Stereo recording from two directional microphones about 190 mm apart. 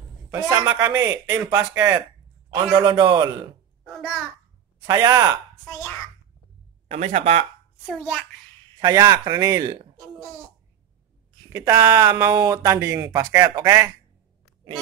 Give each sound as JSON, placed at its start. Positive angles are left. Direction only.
{"t": 0.3, "sound": "speech", "side_deg": -15}
{"t": 3.8, "sound": "a sound", "side_deg": 0}
{"t": 4.8, "sound": "speech", "side_deg": -20}
{"t": 6.9, "sound": "speech", "side_deg": -35}
{"t": 7.9, "sound": "a child's voice", "side_deg": -5}
{"t": 8.7, "sound": "speech", "side_deg": -20}
{"t": 11.5, "sound": "speech", "side_deg": -15}